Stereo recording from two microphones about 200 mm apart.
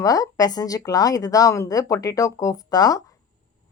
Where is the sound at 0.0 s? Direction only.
20° left (ahead or behind).